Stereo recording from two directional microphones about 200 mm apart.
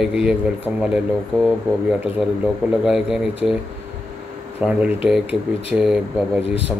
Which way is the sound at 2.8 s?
Centre (ahead or behind).